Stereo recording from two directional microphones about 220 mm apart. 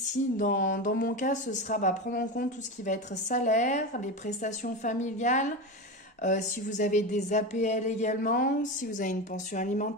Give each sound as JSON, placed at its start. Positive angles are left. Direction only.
{"t": 0.4, "sound": "speech", "side_deg": 40}